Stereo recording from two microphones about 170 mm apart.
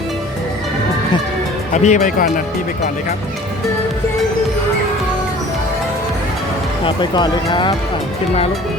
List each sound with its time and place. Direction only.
1.7 s speech: 45° left (ahead or behind)
6.8 s speech: 25° left (ahead or behind)